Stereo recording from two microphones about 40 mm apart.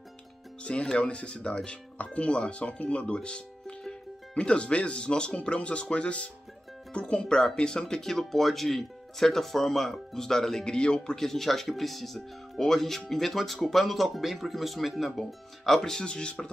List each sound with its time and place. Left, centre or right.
0.9 s speech: left; by 10.6 s centre
10.6 s speech: left
11.0 s speech: centre
16.1 s speech: left